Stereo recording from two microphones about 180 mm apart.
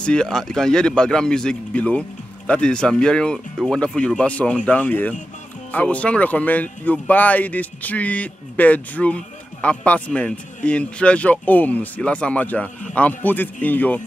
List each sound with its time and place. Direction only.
0.0 s speech: 5° left (ahead or behind)